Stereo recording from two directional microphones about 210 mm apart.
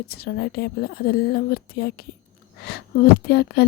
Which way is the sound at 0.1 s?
50° left (ahead or behind).